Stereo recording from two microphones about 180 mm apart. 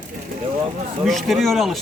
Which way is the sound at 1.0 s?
Centre (ahead or behind).